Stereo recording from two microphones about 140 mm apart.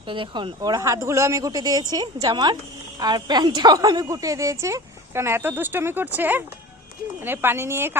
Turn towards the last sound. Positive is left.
turn(degrees=-15)  # may be behind; listen again after turning